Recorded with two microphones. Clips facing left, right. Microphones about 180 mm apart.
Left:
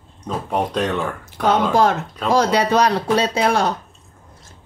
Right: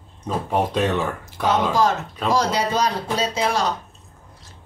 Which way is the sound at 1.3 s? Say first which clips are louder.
Left 4 dB; 55° left (ahead or behind).